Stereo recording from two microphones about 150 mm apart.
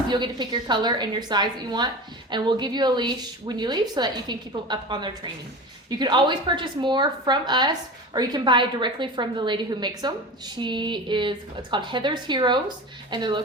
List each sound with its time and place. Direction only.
0.1 s a woman's voice: 30° right (ahead or behind)